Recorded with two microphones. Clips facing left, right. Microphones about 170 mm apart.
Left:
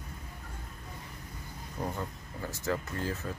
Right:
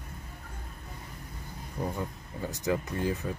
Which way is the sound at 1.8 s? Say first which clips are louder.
Right 2 dB; 5° right (ahead or behind).